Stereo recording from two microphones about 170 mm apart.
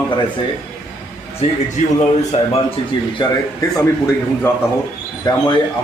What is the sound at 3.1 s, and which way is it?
Speech, 20° left (ahead or behind).